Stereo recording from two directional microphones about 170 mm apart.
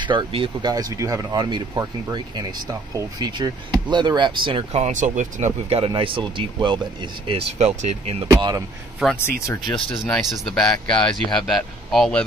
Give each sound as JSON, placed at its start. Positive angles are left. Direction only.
{"t": 0.0, "sound": "speech", "side_deg": -25}
{"t": 8.3, "sound": "speech", "side_deg": -20}
{"t": 9.0, "sound": "speech", "side_deg": 0}